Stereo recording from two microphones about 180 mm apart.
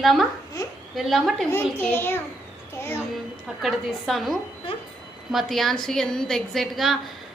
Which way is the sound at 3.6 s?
Centre (ahead or behind).